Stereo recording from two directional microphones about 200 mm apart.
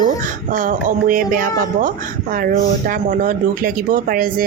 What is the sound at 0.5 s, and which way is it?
Speech, 40° right (ahead or behind).